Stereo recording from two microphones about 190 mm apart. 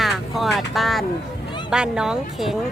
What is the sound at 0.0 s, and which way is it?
Vehicle, centre (ahead or behind).